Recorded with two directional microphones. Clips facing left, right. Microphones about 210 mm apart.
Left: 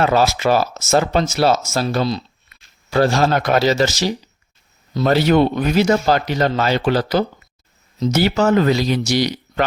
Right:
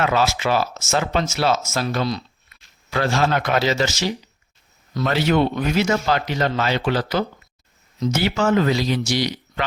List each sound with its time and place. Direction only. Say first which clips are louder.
0.0 s speech: left 4 dB; 35° left (ahead or behind)